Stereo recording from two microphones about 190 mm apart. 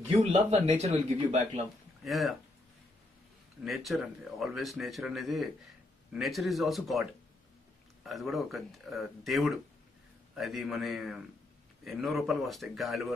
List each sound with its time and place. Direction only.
0.3 s speech: 35° right (ahead or behind)
2.0 s speech: centre (ahead or behind)
3.6 s speech: centre (ahead or behind)